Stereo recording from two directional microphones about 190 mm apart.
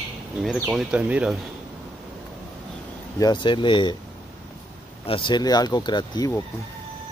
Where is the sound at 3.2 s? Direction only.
25° left (ahead or behind).